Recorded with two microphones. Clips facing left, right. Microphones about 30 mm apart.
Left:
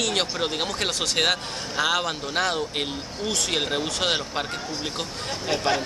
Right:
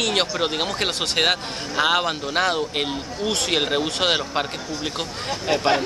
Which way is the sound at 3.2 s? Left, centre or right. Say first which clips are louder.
Right 3 dB; right.